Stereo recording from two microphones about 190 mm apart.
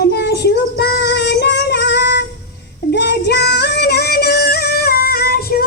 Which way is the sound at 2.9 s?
65° left (ahead or behind).